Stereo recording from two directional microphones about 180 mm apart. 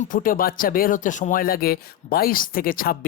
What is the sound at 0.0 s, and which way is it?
Speech, 50° left (ahead or behind).